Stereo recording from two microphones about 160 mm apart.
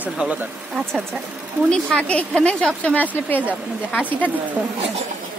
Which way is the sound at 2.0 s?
5° left (ahead or behind).